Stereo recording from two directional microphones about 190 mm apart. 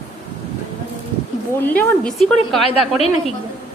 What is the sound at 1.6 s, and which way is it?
Speech, 10° left (ahead or behind).